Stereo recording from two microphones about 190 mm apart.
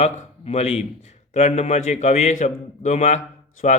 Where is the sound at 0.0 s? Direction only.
35° left (ahead or behind).